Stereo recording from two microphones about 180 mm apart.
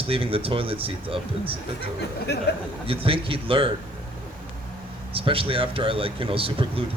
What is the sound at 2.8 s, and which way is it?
Speech, 30° right (ahead or behind).